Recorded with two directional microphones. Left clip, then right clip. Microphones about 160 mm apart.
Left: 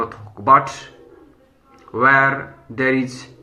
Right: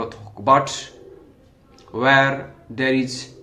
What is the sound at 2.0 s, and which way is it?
Speech, 40° right (ahead or behind).